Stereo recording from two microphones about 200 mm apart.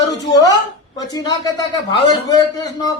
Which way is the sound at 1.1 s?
20° left (ahead or behind).